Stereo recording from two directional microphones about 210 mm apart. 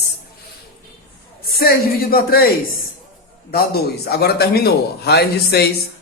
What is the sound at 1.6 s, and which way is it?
Speech, 45° left (ahead or behind).